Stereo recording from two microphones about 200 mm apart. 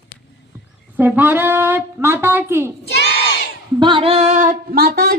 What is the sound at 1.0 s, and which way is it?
A woman's voice, 10° right (ahead or behind).